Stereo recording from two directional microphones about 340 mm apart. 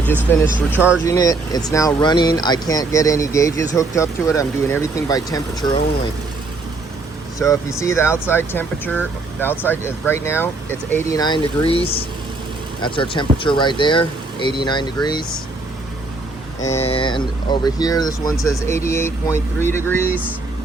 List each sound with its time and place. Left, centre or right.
0.3 s speech: centre
7.3 s speech: centre
16.7 s speech: centre